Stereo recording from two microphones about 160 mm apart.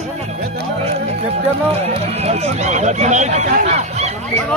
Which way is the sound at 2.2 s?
40° right (ahead or behind).